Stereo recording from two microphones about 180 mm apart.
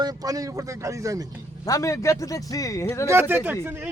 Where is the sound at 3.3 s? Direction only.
10° right (ahead or behind).